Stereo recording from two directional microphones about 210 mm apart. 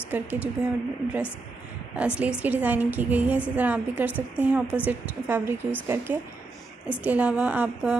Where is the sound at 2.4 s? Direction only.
5° right (ahead or behind).